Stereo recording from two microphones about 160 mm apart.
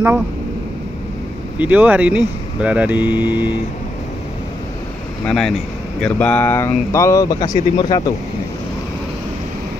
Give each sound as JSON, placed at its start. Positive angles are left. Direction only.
{"t": 1.6, "sound": "speech", "side_deg": -10}
{"t": 5.2, "sound": "speech", "side_deg": 5}